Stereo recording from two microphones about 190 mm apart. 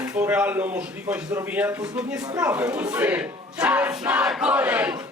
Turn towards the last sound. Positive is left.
turn(degrees=-5)  # may be behind; listen again after turning